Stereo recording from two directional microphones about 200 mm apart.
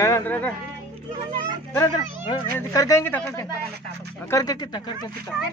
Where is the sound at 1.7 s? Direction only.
20° left (ahead or behind).